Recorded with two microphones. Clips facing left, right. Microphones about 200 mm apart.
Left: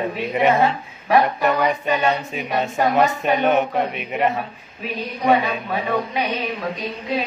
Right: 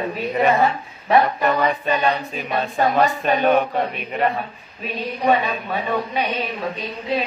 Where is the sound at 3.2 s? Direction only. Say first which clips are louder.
Right 1 dB; 20° left (ahead or behind).